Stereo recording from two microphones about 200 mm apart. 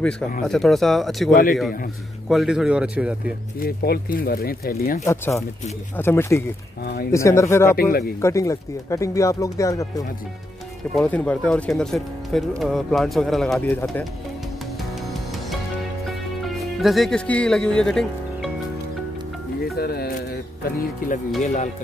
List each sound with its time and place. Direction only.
0.5 s speech: centre (ahead or behind)
1.3 s speech: 45° left (ahead or behind)
2.2 s speech: centre (ahead or behind)
3.5 s speech: 50° left (ahead or behind)
5.0 s speech: 15° left (ahead or behind)
6.8 s speech: 50° left (ahead or behind)
7.1 s speech: 15° left (ahead or behind)
7.7 s speech: 50° left (ahead or behind)
8.2 s speech: 15° left (ahead or behind)
16.4 s speech: centre (ahead or behind)
19.8 s speech: 50° left (ahead or behind)
21.4 s speech: 35° left (ahead or behind)